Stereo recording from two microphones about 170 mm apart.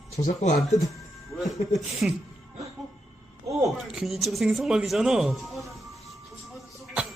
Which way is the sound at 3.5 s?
20° right (ahead or behind).